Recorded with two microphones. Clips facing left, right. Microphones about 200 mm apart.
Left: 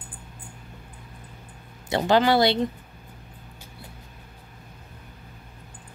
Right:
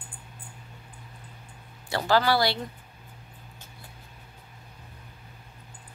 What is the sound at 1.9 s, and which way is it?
Speech, 20° left (ahead or behind).